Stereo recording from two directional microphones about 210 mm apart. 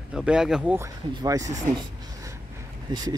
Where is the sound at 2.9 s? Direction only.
20° right (ahead or behind).